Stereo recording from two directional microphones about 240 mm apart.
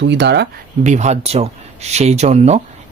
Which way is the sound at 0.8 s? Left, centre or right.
Right.